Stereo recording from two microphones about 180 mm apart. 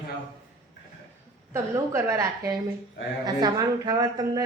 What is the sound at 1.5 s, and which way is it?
A woman's voice, 15° right (ahead or behind).